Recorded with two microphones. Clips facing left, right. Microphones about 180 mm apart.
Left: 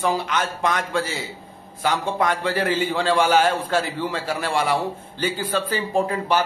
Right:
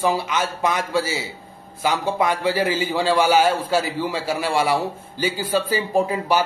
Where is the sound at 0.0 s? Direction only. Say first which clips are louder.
Right 1 dB; 10° right (ahead or behind).